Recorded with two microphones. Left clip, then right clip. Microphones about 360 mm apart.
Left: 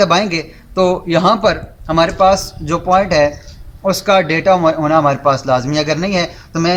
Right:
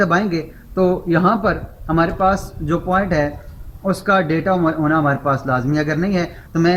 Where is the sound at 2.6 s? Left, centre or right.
Centre.